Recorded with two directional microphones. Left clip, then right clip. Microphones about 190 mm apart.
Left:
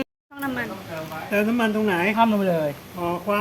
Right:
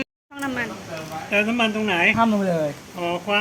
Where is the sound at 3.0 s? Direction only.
40° left (ahead or behind).